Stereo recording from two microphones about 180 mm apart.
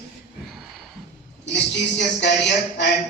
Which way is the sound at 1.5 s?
75° left (ahead or behind).